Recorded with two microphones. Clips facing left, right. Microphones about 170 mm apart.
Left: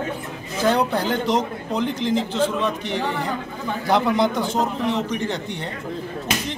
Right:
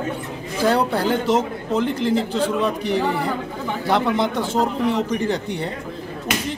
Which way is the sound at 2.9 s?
35° right (ahead or behind).